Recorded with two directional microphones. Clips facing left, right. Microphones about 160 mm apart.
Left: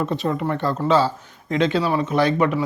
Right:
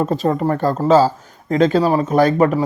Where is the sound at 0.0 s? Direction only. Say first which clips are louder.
Right 5 dB; 40° right (ahead or behind).